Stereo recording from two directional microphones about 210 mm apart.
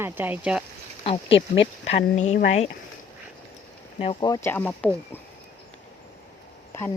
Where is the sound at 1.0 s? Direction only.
25° left (ahead or behind).